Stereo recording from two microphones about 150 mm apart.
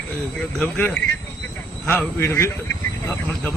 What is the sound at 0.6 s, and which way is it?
Speech, 10° left (ahead or behind).